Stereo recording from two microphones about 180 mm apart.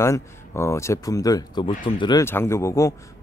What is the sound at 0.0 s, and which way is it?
Speech, 15° left (ahead or behind).